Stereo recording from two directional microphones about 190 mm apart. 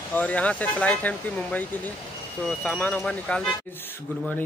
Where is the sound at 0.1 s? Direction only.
5° left (ahead or behind).